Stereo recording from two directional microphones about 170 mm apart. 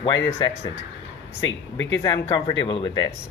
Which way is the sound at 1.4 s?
90° left.